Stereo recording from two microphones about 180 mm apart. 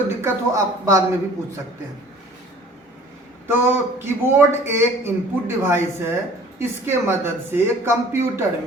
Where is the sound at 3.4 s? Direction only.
10° right (ahead or behind).